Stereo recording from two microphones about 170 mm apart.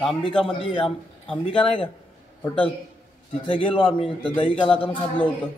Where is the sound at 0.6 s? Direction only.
30° left (ahead or behind).